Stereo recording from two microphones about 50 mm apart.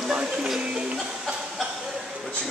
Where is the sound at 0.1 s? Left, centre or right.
Centre.